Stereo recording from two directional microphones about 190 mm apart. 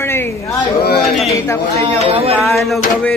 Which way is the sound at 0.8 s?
55° left (ahead or behind).